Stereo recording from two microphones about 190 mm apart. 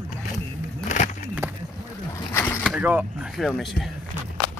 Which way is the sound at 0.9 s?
40° left (ahead or behind).